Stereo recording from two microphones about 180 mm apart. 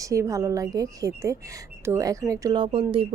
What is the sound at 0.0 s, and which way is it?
A woman's voice, 20° right (ahead or behind).